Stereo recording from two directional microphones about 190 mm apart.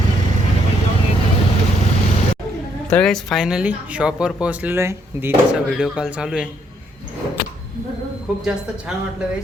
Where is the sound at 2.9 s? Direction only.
5° left (ahead or behind).